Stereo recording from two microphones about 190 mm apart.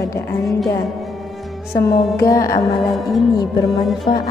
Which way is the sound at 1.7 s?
15° left (ahead or behind).